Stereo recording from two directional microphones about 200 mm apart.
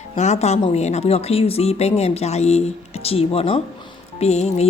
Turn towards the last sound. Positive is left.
turn(degrees=30)  # may be behind; listen again after turning